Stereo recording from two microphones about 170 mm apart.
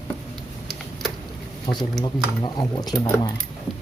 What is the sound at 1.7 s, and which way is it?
Speech, 25° left (ahead or behind).